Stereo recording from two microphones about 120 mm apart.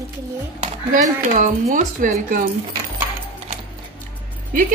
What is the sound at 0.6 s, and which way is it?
A woman's voice, 85° right.